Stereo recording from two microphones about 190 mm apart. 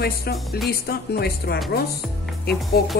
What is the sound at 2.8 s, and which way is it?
Speech, 55° left (ahead or behind).